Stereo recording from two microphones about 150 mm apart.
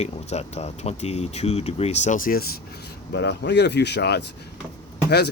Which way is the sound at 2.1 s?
65° left (ahead or behind).